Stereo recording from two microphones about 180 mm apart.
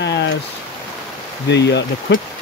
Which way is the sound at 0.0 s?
75° left (ahead or behind).